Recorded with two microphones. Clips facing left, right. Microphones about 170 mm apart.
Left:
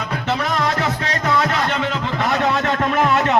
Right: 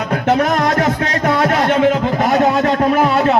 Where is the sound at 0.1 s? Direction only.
50° right (ahead or behind).